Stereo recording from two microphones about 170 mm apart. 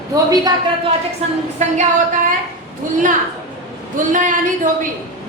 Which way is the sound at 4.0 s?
50° right (ahead or behind).